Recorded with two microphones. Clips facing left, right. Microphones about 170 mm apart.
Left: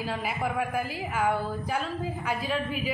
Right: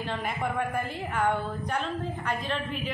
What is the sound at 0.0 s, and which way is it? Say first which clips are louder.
A woman's voice: left 1 dB; 5° left (ahead or behind).